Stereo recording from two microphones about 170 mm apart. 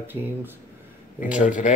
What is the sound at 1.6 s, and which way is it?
Speech, 45° left (ahead or behind).